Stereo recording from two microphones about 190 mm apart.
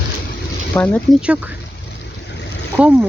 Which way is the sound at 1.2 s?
5° right (ahead or behind).